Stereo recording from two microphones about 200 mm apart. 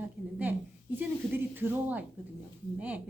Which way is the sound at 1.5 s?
10° right (ahead or behind).